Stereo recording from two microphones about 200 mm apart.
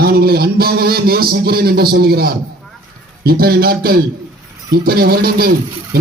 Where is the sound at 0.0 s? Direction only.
50° right (ahead or behind).